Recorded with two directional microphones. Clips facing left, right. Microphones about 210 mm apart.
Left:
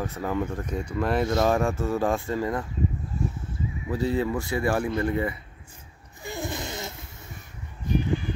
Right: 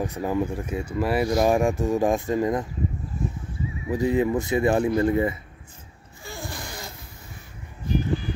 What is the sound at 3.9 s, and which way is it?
Speech, 15° right (ahead or behind).